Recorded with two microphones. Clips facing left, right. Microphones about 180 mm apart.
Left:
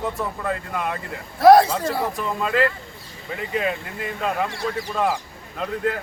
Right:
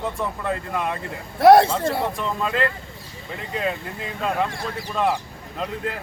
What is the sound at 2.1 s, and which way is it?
Speech, 5° left (ahead or behind).